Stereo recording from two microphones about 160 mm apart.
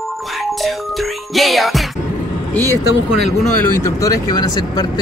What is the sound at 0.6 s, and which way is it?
Music, centre (ahead or behind).